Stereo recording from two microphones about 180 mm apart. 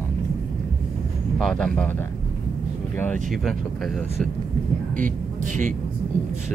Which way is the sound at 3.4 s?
Centre (ahead or behind).